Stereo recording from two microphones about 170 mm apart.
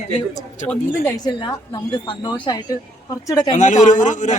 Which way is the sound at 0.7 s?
20° left (ahead or behind).